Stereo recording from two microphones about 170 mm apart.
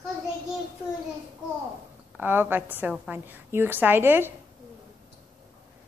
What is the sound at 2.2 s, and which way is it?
A woman's voice, 10° right (ahead or behind).